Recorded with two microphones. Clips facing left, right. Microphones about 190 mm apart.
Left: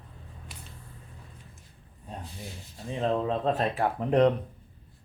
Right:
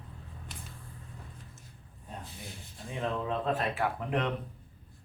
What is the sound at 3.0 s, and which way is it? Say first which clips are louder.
Speech: left 5 dB; 30° left (ahead or behind).